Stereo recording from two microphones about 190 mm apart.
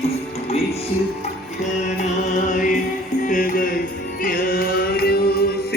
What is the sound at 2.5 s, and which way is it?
Music, 45° left (ahead or behind).